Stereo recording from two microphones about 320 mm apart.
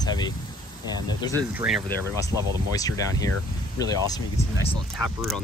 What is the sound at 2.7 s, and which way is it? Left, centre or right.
Speech, centre.